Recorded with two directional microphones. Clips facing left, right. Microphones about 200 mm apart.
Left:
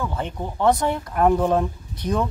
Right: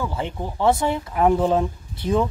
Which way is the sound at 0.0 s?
5° right (ahead or behind).